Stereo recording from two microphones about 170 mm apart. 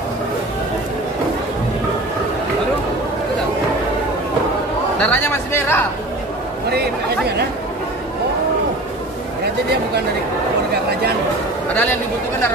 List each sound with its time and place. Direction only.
5.0 s speech: 10° left (ahead or behind)
6.7 s speech: 70° right (ahead or behind)
11.7 s speech: 10° left (ahead or behind)